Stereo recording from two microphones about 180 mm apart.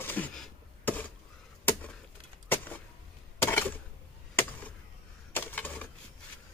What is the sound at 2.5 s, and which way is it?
Vehicle, 10° left (ahead or behind).